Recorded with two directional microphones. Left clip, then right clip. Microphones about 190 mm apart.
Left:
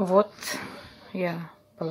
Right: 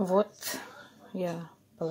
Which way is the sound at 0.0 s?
10° left (ahead or behind).